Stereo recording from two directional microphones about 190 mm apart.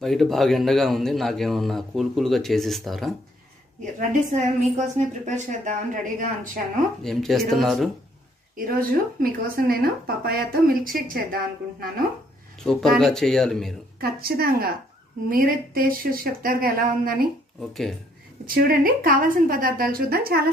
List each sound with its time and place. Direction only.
0.0 s a man's voice: centre (ahead or behind)
4.1 s a woman's voice: 40° right (ahead or behind)
7.0 s a man's voice: centre (ahead or behind)
8.5 s speech: 50° right (ahead or behind)
12.5 s a man's voice: centre (ahead or behind)
13.9 s speech: 55° right (ahead or behind)
18.4 s speech: 50° right (ahead or behind)